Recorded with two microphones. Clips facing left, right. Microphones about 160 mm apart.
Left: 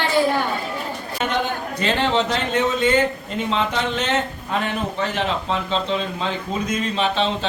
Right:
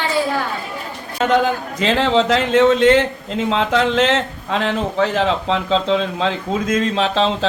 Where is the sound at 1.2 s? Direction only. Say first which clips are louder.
Right 8 dB; 90° right.